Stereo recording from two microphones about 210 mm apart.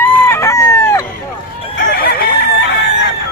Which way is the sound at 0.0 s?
10° left (ahead or behind).